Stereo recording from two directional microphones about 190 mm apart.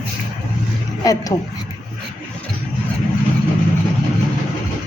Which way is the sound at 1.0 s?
15° left (ahead or behind).